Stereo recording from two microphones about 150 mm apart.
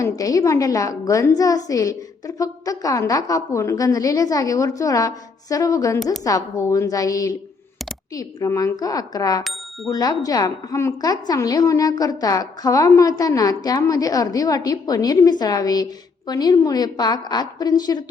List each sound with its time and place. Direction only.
0.0 s a woman's voice: 25° left (ahead or behind)
9.4 s bicycle bell: centre (ahead or behind)
9.9 s a woman's voice: 25° left (ahead or behind)